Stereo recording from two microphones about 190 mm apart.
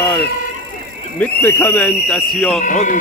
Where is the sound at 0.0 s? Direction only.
10° left (ahead or behind).